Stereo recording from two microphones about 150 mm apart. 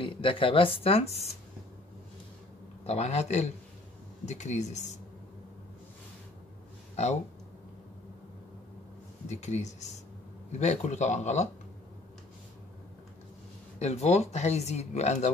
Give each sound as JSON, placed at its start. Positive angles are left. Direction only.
{"t": 0.0, "sound": "speech", "side_deg": 35}
{"t": 2.8, "sound": "speech", "side_deg": 45}
{"t": 9.3, "sound": "speech", "side_deg": 50}
{"t": 13.7, "sound": "speech", "side_deg": 45}